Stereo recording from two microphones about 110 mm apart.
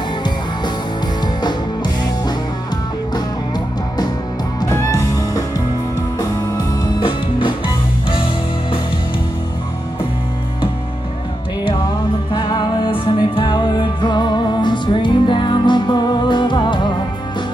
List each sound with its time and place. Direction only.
4.6 s music: 25° left (ahead or behind)
7.0 s music: 50° left (ahead or behind)
12.3 s music: 40° left (ahead or behind)